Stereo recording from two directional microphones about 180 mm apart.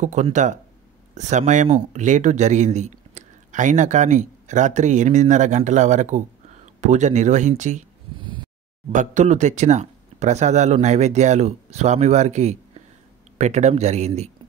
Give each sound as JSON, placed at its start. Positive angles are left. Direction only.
{"t": 0.0, "sound": "speech", "side_deg": -40}
{"t": 8.9, "sound": "speech", "side_deg": -45}